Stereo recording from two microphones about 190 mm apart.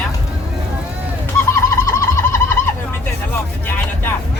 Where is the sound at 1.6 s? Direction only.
15° left (ahead or behind).